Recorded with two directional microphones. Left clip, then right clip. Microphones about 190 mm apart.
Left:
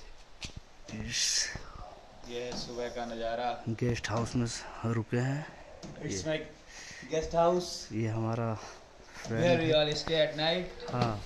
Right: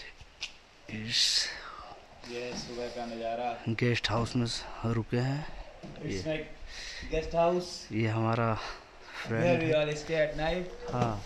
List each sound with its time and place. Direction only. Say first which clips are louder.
0.8 s speech: right 4 dB; 5° right (ahead or behind)
6.1 s speech: left 1 dB; 15° right (ahead or behind)